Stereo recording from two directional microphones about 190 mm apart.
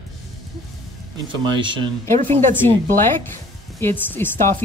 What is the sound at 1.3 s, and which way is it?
Speech, 25° right (ahead or behind).